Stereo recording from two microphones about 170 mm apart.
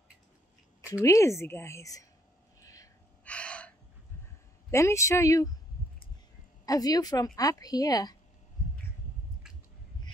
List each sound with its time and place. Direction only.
1.0 s speech: 15° left (ahead or behind)
2.6 s vehicle: 20° left (ahead or behind)
3.3 s gasp: 5° left (ahead or behind)
4.6 s speech: 15° left (ahead or behind)
6.6 s a woman's voice: 20° left (ahead or behind)